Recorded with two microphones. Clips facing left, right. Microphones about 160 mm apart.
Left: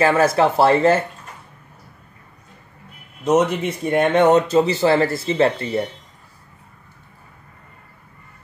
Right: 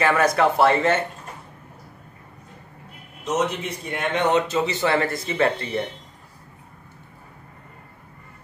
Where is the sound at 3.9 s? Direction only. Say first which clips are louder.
Left 7 dB; 45° left (ahead or behind); by 5.8 s 30° left (ahead or behind).